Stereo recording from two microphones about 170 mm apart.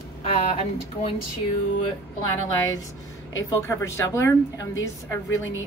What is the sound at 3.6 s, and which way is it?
A woman's voice, 15° left (ahead or behind).